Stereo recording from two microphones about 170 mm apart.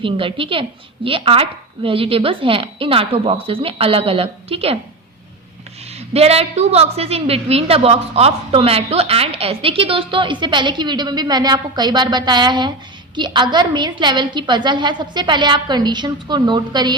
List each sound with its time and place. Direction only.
0.0 s a woman's voice: 30° right (ahead or behind)
6.1 s a woman's voice: 35° right (ahead or behind)